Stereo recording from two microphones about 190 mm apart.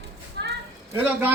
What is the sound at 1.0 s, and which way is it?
Speech, 10° right (ahead or behind).